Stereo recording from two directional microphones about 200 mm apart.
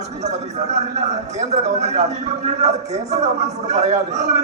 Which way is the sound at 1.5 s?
35° right (ahead or behind).